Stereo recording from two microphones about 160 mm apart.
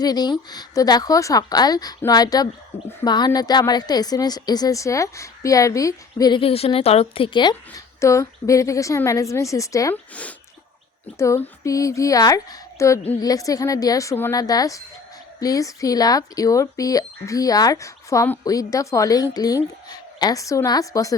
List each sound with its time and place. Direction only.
0.0 s a woman's voice: 25° left (ahead or behind)
8.0 s a woman's voice: 20° left (ahead or behind)
11.2 s a woman's voice: 20° left (ahead or behind)